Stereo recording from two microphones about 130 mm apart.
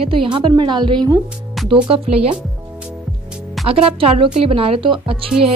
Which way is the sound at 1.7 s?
45° right (ahead or behind).